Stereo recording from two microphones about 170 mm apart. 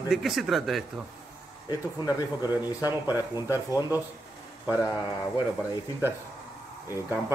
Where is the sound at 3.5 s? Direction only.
20° left (ahead or behind).